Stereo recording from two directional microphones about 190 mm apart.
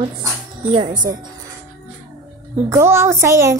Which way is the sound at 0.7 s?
25° right (ahead or behind).